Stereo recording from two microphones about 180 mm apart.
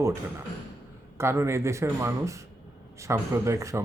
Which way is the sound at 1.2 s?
15° right (ahead or behind).